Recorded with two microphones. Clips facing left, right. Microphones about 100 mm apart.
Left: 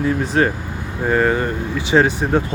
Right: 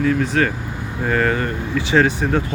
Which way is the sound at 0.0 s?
25° left (ahead or behind).